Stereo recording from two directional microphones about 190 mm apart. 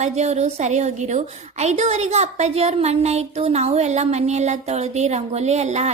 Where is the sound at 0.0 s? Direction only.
35° right (ahead or behind).